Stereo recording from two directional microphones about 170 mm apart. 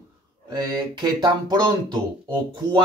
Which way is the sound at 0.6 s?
25° right (ahead or behind).